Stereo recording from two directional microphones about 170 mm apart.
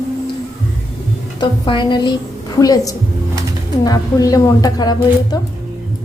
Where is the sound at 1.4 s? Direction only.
25° left (ahead or behind).